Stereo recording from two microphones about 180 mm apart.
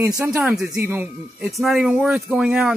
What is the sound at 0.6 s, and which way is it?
Speech, 15° right (ahead or behind).